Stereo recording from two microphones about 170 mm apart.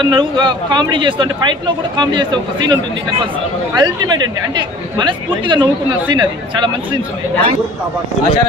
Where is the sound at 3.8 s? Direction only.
25° right (ahead or behind).